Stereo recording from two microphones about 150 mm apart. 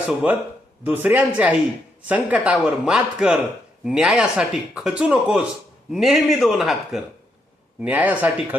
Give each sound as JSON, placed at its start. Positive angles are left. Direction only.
{"t": 0.1, "sound": "a man's voice", "side_deg": -5}